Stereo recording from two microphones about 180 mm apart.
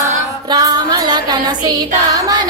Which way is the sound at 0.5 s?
20° right (ahead or behind).